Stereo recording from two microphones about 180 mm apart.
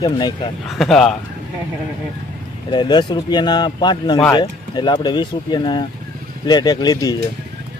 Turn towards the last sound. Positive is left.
turn(degrees=20)  # may be behind; listen again after turning